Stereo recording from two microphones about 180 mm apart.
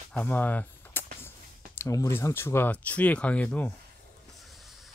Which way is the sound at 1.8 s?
15° left (ahead or behind).